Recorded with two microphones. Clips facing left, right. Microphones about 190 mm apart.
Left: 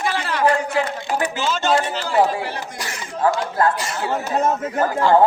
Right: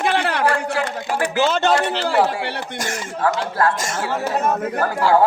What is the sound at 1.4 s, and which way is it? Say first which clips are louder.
A man's voice: right 4 dB; 60° right (ahead or behind).